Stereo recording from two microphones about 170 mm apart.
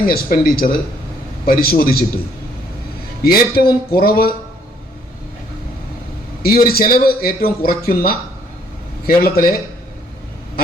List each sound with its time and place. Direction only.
0.0 s a man's voice: 60° left (ahead or behind)
3.2 s a man's voice: 65° left (ahead or behind)
6.4 s a man's voice: 60° left (ahead or behind)